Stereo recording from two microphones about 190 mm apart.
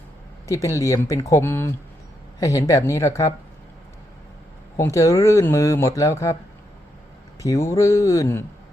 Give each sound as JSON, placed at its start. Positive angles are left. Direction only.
{"t": 0.4, "sound": "speech", "side_deg": 15}
{"t": 4.8, "sound": "speech", "side_deg": 15}
{"t": 7.4, "sound": "speech", "side_deg": 15}